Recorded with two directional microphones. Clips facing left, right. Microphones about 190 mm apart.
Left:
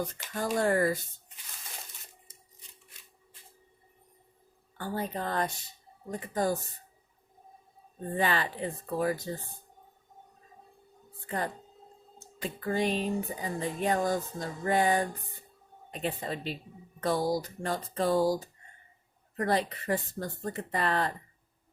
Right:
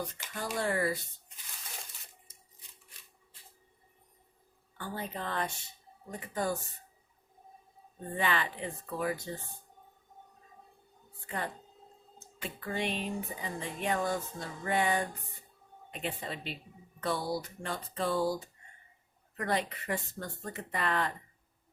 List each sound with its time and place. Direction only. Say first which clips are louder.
0.3 s speech: left 6 dB; 45° left (ahead or behind)
4.8 s speech: left 5 dB; 40° left (ahead or behind)
8.1 s speech: left 3 dB; 40° left (ahead or behind)
11.3 s speech: left 4 dB; 40° left (ahead or behind)